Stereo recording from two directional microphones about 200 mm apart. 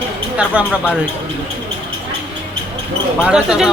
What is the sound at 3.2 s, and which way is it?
Speech, 5° right (ahead or behind).